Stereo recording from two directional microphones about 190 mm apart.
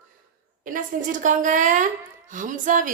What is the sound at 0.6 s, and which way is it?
A woman's voice, 45° right (ahead or behind).